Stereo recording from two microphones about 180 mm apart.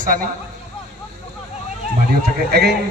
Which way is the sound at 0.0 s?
50° right (ahead or behind).